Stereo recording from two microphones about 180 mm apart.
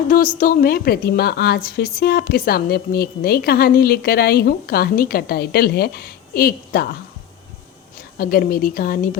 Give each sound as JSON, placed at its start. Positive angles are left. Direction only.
{"t": 0.3, "sound": "a woman's voice", "side_deg": 50}
{"t": 8.2, "sound": "a woman's voice", "side_deg": 55}